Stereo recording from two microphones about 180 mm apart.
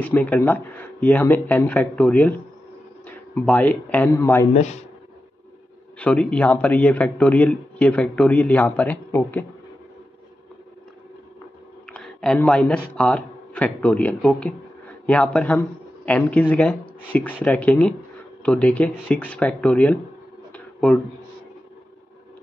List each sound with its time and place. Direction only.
0.0 s a man's voice: 10° left (ahead or behind)
4.6 s speech: 40° left (ahead or behind)
5.9 s a man's voice: 5° left (ahead or behind)
11.9 s a man's voice: 5° left (ahead or behind)
20.5 s a sound: 5° left (ahead or behind)